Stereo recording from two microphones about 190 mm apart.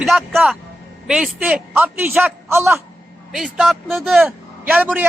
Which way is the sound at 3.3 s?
Centre (ahead or behind).